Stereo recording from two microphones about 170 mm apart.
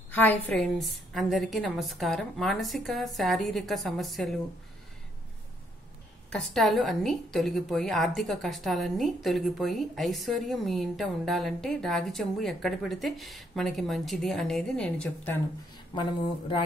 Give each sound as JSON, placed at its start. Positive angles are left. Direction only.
{"t": 0.1, "sound": "a woman's voice", "side_deg": 10}
{"t": 6.3, "sound": "a woman's voice", "side_deg": 0}
{"t": 15.9, "sound": "speech", "side_deg": 30}